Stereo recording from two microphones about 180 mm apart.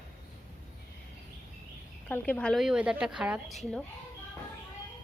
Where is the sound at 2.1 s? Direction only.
10° left (ahead or behind).